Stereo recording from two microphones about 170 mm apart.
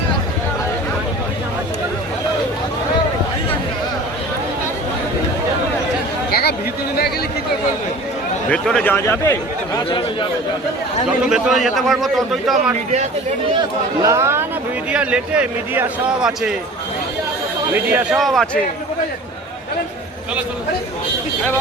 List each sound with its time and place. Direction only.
8.4 s speech: 5° left (ahead or behind)
11.3 s a man's voice: centre (ahead or behind)
14.0 s a man's voice: 15° right (ahead or behind)
17.9 s a man's voice: centre (ahead or behind)